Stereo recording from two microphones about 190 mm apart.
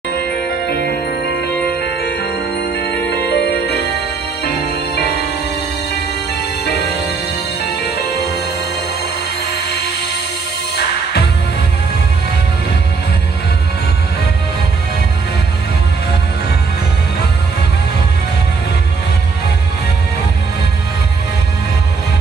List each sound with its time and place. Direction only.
3.1 s music: 60° left (ahead or behind)
6.6 s music: 60° left (ahead or behind)